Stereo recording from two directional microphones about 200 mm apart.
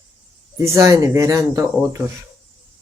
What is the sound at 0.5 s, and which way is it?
Speech, 15° right (ahead or behind).